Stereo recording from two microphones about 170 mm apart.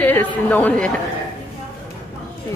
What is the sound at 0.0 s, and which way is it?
Speech, 10° left (ahead or behind).